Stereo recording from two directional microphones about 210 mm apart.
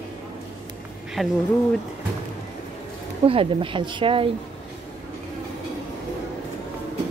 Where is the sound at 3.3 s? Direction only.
25° right (ahead or behind).